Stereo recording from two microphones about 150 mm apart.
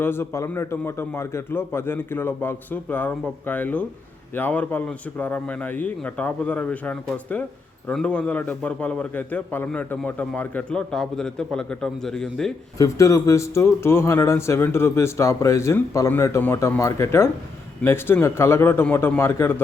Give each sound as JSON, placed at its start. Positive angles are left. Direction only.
{"t": 0.0, "sound": "a man's voice", "side_deg": 15}
{"t": 12.8, "sound": "a man's voice", "side_deg": 20}